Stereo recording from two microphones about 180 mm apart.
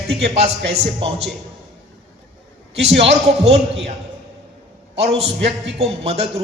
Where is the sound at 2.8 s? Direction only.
35° right (ahead or behind).